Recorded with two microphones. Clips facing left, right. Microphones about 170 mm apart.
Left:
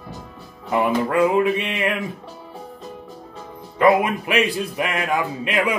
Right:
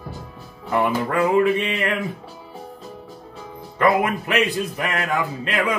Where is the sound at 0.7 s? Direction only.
5° left (ahead or behind).